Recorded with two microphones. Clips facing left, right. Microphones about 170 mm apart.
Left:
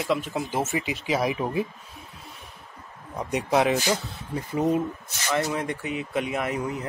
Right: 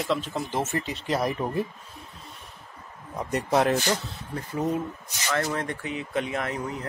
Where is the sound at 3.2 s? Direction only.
Centre (ahead or behind).